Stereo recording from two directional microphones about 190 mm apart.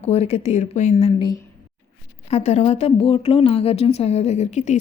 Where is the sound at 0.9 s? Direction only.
25° left (ahead or behind).